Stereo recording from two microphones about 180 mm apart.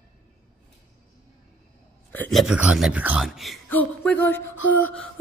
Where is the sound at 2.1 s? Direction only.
5° left (ahead or behind).